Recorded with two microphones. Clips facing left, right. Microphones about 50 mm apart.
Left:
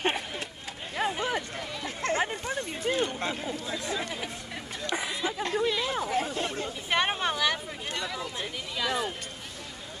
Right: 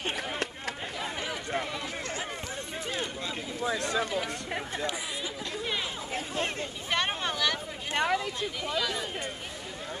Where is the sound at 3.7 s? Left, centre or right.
Right.